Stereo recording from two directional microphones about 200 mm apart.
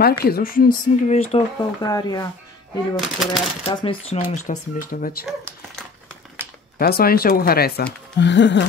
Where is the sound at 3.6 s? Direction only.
30° left (ahead or behind).